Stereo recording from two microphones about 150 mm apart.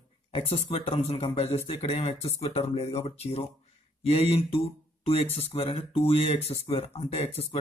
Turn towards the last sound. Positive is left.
turn(degrees=40)  # may be behind; listen again after turning